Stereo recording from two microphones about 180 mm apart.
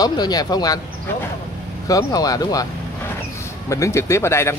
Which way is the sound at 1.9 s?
20° left (ahead or behind).